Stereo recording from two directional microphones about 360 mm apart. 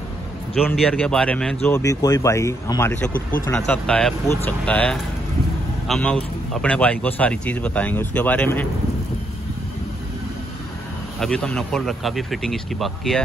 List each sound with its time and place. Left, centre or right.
0.6 s a man's voice: centre
3.1 s speech: left
3.4 s a man's voice: centre
11.1 s a man's voice: centre